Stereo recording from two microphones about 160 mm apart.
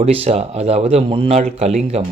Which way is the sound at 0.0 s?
40° right (ahead or behind).